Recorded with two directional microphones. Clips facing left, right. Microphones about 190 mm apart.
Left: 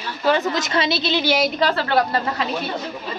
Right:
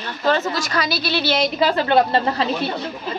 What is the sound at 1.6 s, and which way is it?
Speech, 15° right (ahead or behind).